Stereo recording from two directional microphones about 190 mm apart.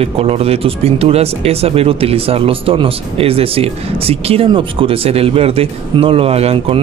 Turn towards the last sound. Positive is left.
turn(degrees=-30)  # may be behind; listen again after turning